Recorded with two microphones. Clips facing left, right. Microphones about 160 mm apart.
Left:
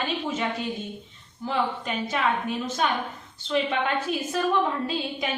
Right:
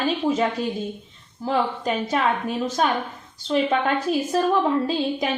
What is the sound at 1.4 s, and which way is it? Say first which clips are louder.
A woman's voice: right 4 dB; 40° right (ahead or behind).